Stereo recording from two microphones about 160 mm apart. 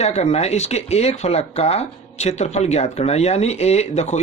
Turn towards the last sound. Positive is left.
turn(degrees=45)  # may be behind; listen again after turning